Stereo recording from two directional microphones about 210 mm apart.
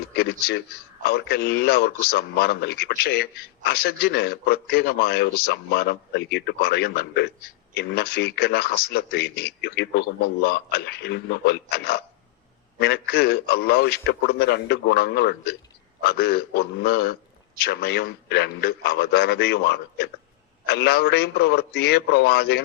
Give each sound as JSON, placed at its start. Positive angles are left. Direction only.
{"t": 0.2, "sound": "a man's voice", "side_deg": 50}